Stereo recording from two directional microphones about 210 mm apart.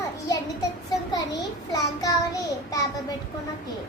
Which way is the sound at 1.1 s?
15° left (ahead or behind).